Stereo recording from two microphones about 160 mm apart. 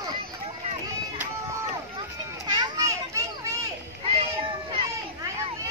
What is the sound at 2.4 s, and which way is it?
Children playing, 25° right (ahead or behind).